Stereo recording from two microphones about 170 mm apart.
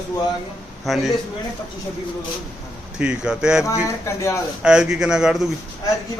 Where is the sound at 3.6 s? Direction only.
15° left (ahead or behind).